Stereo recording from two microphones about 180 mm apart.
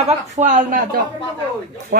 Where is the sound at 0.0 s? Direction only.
45° right (ahead or behind).